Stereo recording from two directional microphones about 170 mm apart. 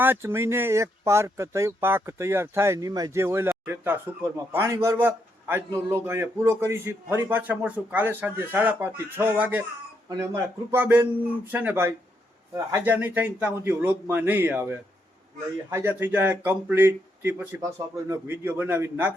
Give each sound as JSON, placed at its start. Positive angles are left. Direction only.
{"t": 0.0, "sound": "a man's voice", "side_deg": -15}